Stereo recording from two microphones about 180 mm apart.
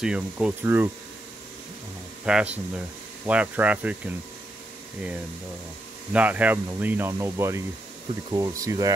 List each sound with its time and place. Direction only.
0.0 s speech: 5° right (ahead or behind)
2.2 s speech: 5° right (ahead or behind)
6.1 s speech: 10° right (ahead or behind)